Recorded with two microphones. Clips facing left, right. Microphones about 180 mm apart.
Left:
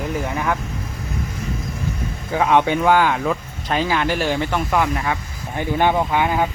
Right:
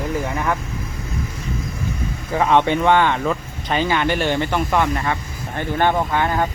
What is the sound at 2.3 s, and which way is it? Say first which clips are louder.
Speech: even; centre (ahead or behind).